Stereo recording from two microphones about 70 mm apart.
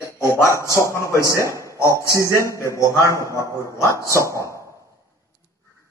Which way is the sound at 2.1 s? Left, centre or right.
Left.